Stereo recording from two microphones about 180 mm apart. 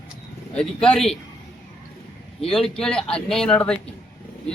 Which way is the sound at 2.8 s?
5° left (ahead or behind).